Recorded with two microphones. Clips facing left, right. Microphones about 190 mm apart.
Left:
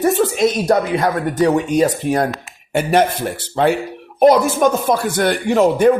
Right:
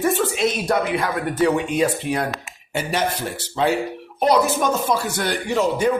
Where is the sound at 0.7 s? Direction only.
40° left (ahead or behind).